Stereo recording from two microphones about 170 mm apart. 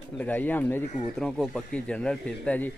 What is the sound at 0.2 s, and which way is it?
Speech, 10° left (ahead or behind).